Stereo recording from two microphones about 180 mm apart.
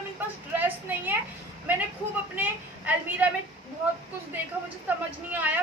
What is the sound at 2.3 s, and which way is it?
A woman's voice, 10° right (ahead or behind).